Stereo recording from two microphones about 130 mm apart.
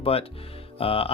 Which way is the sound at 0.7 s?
45° left (ahead or behind).